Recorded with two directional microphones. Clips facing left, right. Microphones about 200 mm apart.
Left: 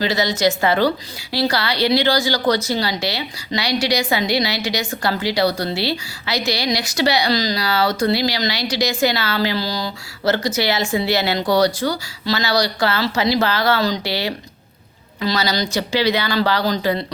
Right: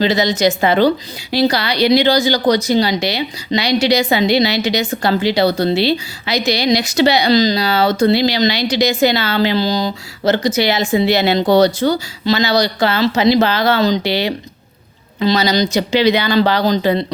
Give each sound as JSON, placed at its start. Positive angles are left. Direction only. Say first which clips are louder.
{"t": 0.0, "sound": "a woman's voice", "louder": "right 4 dB", "side_deg": -20}